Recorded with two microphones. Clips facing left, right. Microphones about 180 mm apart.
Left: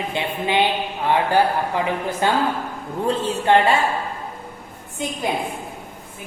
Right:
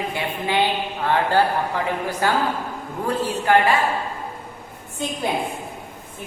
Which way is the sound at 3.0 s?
25° left (ahead or behind).